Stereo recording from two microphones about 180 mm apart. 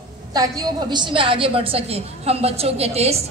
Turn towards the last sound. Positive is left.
turn(degrees=-35)  # may be behind; listen again after turning